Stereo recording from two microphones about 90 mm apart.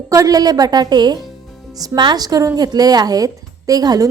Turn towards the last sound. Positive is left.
turn(degrees=-45)  # may be behind; listen again after turning